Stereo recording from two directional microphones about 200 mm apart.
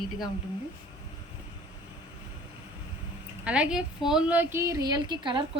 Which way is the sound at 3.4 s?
5° right (ahead or behind).